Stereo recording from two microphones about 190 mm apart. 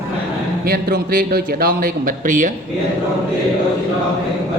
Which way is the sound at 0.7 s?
55° right (ahead or behind).